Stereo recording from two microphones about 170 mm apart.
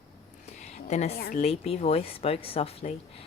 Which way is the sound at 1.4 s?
35° left (ahead or behind).